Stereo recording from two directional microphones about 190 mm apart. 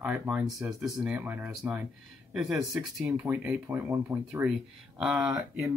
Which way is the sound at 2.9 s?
10° right (ahead or behind).